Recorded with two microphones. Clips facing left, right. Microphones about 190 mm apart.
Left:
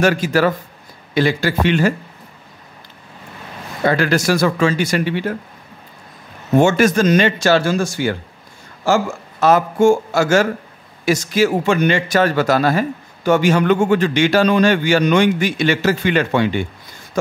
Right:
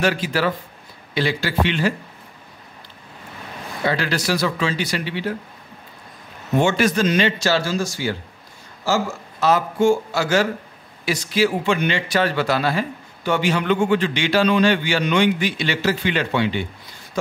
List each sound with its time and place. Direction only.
0.0 s speech: 45° left (ahead or behind)
3.8 s speech: 50° left (ahead or behind)
6.6 s speech: 45° left (ahead or behind)